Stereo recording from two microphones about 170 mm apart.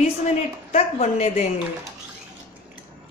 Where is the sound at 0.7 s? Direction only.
45° left (ahead or behind).